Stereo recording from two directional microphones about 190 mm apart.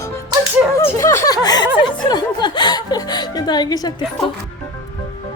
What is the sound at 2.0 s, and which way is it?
Chuckle, 20° left (ahead or behind).